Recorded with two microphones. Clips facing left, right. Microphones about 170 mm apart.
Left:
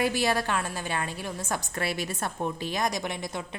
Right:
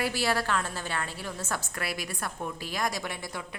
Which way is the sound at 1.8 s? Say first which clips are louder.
Left 4 dB; 25° left (ahead or behind).